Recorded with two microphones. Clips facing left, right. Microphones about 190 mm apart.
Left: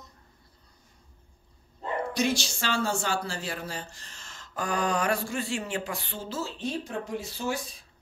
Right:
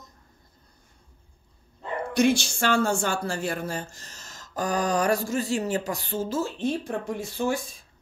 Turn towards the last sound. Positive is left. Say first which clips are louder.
# right 5 dB
turn(degrees=-50)  # may be behind; listen again after turning